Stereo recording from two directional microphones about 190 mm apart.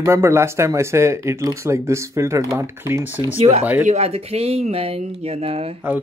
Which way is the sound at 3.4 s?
35° right (ahead or behind).